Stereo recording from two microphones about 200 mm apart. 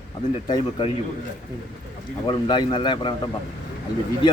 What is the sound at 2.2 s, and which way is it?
Speech, 25° left (ahead or behind).